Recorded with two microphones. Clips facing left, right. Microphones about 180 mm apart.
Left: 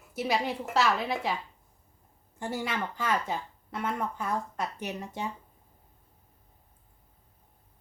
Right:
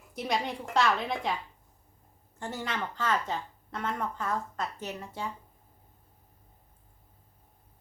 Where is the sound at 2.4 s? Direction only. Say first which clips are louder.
Left 2 dB; 10° left (ahead or behind).